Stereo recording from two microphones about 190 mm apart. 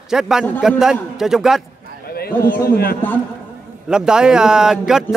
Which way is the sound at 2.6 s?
50° left (ahead or behind).